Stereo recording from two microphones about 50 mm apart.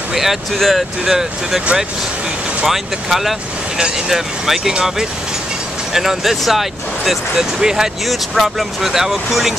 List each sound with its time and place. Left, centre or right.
0.1 s speech: centre
2.6 s speech: centre
3.7 s speech: centre
8.1 s speech: centre